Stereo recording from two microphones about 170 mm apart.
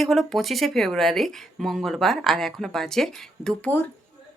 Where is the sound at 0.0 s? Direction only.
Centre (ahead or behind).